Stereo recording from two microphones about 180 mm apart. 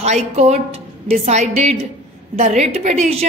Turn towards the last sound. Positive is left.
turn(degrees=-35)  # may be behind; listen again after turning